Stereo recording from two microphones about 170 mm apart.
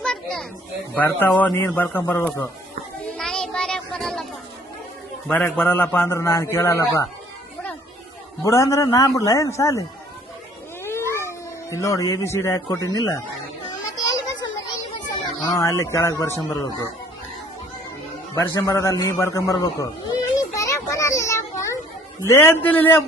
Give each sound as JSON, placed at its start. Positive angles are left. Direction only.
{"t": 0.0, "sound": "children playing", "side_deg": 5}
{"t": 0.9, "sound": "a man's voice", "side_deg": 10}
{"t": 3.2, "sound": "a sound", "side_deg": 5}
{"t": 5.3, "sound": "a man's voice", "side_deg": 5}
{"t": 8.4, "sound": "a man's voice", "side_deg": 20}
{"t": 10.8, "sound": "cat", "side_deg": 15}
{"t": 13.7, "sound": "children playing", "side_deg": 25}
{"t": 15.6, "sound": "a man's voice", "side_deg": 15}
{"t": 18.3, "sound": "a sound", "side_deg": 20}
{"t": 22.3, "sound": "a man's voice", "side_deg": 15}